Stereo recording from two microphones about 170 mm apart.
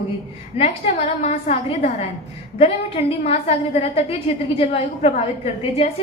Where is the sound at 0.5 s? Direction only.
35° left (ahead or behind).